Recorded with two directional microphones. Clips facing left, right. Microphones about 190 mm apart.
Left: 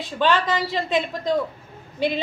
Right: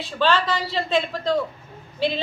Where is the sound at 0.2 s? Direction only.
15° left (ahead or behind).